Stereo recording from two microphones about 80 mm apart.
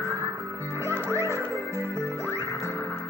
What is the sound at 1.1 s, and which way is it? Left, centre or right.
Music, right.